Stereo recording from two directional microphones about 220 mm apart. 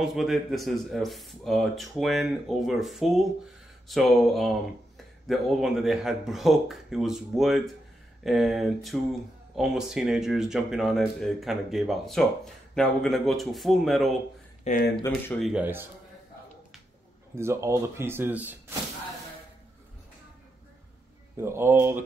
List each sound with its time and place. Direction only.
0.0 s speech: centre (ahead or behind)
14.6 s speech: 35° left (ahead or behind)
15.4 s speech: 5° right (ahead or behind)
17.4 s speech: 10° right (ahead or behind)
21.4 s speech: 10° right (ahead or behind)